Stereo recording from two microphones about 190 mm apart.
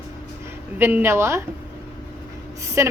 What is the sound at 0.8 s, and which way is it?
Speech, 10° right (ahead or behind).